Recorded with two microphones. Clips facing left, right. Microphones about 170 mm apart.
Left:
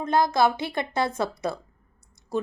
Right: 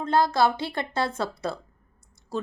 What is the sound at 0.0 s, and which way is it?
Speech, 15° left (ahead or behind).